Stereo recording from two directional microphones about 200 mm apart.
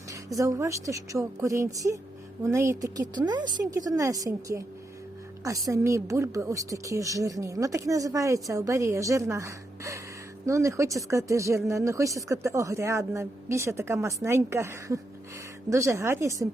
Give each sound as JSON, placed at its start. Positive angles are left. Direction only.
{"t": 0.1, "sound": "a woman's voice", "side_deg": -15}